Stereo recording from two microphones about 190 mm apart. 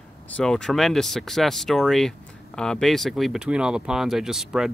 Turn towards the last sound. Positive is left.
turn(degrees=0)  # may be behind; listen again after turning